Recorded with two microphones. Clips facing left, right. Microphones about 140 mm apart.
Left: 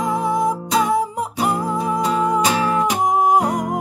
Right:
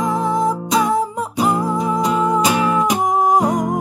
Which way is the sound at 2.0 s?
10° right (ahead or behind).